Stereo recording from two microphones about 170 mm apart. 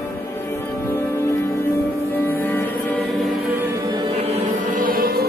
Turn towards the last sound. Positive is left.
turn(degrees=-60)  # may be behind; listen again after turning